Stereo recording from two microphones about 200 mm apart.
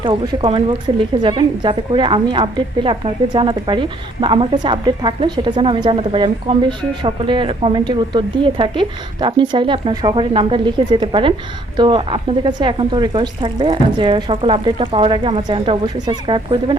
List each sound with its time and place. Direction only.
0.0 s a woman's voice: 25° right (ahead or behind)